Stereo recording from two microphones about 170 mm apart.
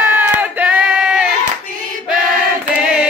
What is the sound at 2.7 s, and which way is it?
Chant, 5° right (ahead or behind).